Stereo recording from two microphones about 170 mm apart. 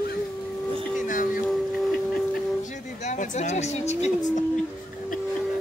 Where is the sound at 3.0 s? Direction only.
45° left (ahead or behind).